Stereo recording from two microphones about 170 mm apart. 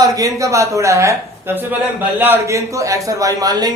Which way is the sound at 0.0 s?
20° right (ahead or behind).